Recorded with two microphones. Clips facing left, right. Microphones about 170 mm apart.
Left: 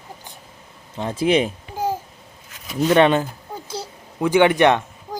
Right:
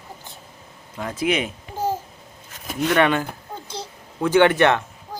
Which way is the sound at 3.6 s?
10° left (ahead or behind).